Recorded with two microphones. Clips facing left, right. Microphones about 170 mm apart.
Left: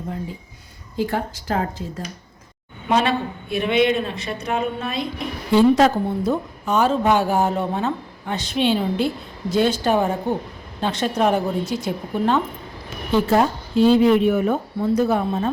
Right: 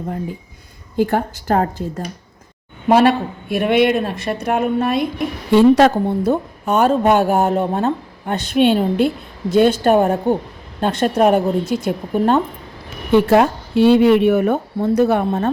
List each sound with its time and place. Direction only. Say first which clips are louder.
0.9 s a woman's voice: right 6 dB; 50° right (ahead or behind)
2.9 s speech: right 7 dB; 55° right (ahead or behind)
5.5 s speech: right 4 dB; 65° right (ahead or behind)
13.1 s speech: right 5 dB; 65° right (ahead or behind)